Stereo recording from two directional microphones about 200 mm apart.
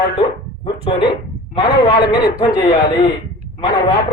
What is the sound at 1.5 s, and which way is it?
Speech, 25° left (ahead or behind).